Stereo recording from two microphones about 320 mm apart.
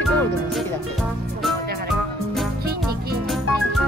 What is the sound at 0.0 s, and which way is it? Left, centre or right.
Music, centre.